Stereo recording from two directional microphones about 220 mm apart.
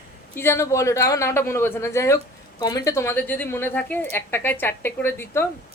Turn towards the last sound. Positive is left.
turn(degrees=10)  # may be behind; listen again after turning